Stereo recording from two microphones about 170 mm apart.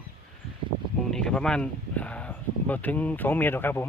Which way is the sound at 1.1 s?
5° left (ahead or behind).